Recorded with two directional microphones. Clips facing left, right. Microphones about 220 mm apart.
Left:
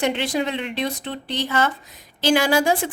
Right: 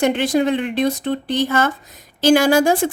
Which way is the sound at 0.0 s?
45° right (ahead or behind).